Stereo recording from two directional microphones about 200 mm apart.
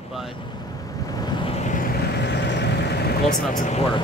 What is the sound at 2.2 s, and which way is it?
Vehicle, 55° left (ahead or behind).